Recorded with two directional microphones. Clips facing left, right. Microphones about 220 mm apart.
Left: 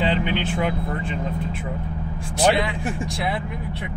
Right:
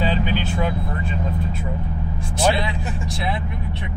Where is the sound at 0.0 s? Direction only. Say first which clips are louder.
Even; 20° left (ahead or behind).